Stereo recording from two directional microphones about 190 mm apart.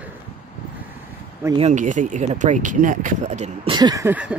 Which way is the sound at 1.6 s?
40° right (ahead or behind).